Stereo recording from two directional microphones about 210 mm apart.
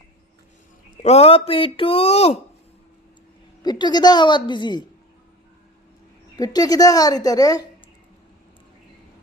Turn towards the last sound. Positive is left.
turn(degrees=15)  # may be behind; listen again after turning